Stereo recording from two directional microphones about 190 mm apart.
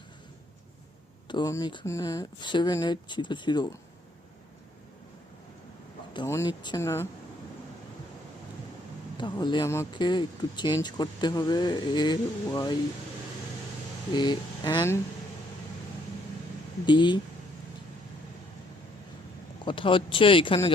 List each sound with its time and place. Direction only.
1.3 s speech: 20° left (ahead or behind)
6.2 s speech: 15° left (ahead or behind)
9.1 s speech: 25° left (ahead or behind)
14.1 s speech: 25° left (ahead or behind)
16.8 s speech: 25° left (ahead or behind)
19.6 s speech: 25° left (ahead or behind)